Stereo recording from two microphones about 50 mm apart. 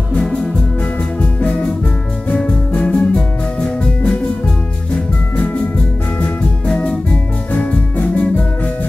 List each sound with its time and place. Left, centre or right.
1.2 s music: left
5.3 s music: left
6.7 s organ: centre
7.1 s music: left